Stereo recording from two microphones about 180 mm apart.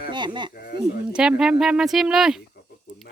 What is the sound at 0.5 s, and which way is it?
Speech, 55° left (ahead or behind).